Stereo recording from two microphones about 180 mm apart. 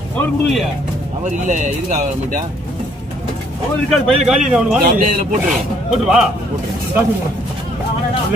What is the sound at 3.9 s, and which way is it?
Speech, 5° right (ahead or behind).